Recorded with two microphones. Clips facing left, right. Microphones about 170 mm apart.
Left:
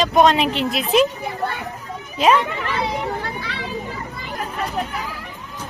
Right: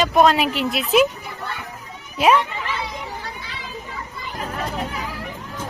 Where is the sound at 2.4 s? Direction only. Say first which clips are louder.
Left 4 dB; 65° left (ahead or behind).